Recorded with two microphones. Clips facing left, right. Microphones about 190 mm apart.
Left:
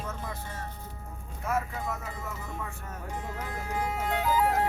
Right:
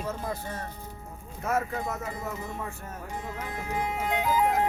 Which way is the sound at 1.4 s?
45° right (ahead or behind).